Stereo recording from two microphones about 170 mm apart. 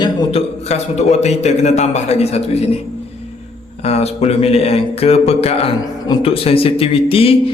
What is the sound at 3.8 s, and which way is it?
A man's voice, 40° left (ahead or behind).